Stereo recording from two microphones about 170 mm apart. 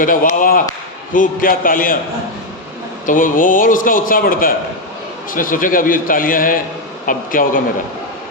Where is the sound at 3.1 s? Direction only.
50° left (ahead or behind).